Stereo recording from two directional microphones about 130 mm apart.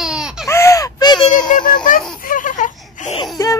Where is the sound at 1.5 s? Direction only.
90° left.